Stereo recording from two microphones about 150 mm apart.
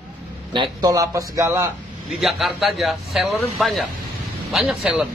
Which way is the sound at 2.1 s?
Centre (ahead or behind).